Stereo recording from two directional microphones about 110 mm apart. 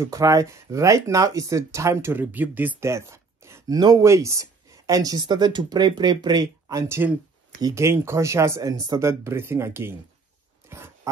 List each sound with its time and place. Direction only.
0.0 s speech: 30° right (ahead or behind)
9.2 s speech: 25° right (ahead or behind)
10.7 s a sound: 20° right (ahead or behind)